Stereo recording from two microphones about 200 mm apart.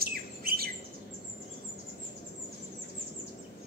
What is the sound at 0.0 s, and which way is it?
Bird, 50° right (ahead or behind).